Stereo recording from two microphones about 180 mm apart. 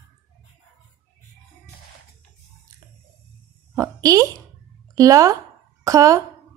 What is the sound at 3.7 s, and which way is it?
A woman's voice, 20° right (ahead or behind).